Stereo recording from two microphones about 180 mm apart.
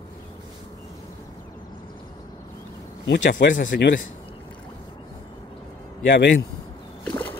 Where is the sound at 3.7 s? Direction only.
65° left (ahead or behind).